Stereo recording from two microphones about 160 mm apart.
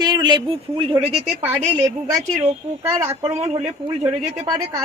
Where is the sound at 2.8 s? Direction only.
15° right (ahead or behind).